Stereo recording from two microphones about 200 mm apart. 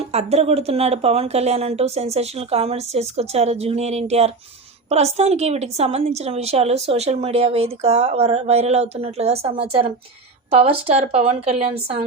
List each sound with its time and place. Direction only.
0.1 s a woman's voice: 30° right (ahead or behind)